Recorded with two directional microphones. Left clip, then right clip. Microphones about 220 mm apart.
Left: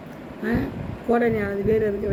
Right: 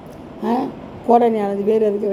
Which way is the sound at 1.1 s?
25° right (ahead or behind).